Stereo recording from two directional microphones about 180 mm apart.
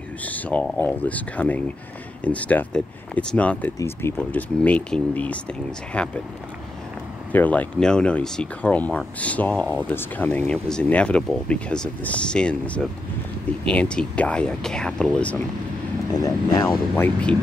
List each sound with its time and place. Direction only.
0.2 s speech: 10° left (ahead or behind)
7.3 s speech: 10° left (ahead or behind)
16.1 s speech: 20° left (ahead or behind)